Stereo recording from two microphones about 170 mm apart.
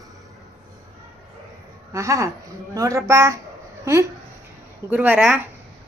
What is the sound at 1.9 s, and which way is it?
Speech, 20° right (ahead or behind).